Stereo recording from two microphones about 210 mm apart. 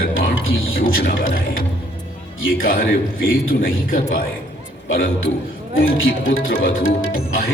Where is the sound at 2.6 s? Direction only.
45° left (ahead or behind).